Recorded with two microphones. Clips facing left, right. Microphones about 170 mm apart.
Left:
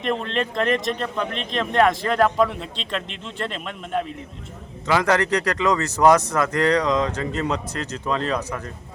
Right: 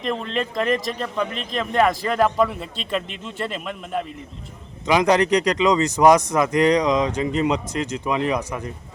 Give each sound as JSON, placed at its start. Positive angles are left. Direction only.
{"t": 0.0, "sound": "speech", "side_deg": 0}
{"t": 4.9, "sound": "speech", "side_deg": -15}